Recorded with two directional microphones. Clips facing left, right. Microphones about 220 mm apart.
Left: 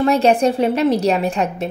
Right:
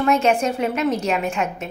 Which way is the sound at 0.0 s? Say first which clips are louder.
Left 4 dB; 35° left (ahead or behind).